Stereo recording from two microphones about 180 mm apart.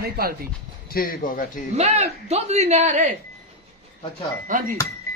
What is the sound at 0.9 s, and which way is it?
Speech, 55° left (ahead or behind).